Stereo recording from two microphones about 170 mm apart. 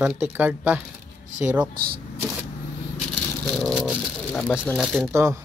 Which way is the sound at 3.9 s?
Centre (ahead or behind).